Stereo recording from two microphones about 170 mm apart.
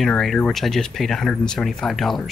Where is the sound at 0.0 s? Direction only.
Centre (ahead or behind).